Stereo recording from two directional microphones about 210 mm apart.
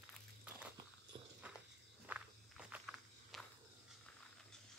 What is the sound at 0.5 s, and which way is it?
Walk, 5° right (ahead or behind).